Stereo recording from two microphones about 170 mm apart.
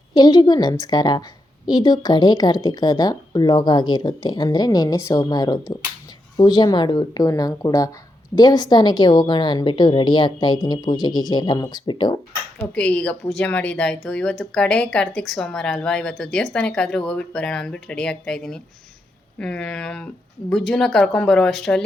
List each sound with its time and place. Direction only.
0.1 s speech: 25° left (ahead or behind)
12.7 s speech: 5° left (ahead or behind)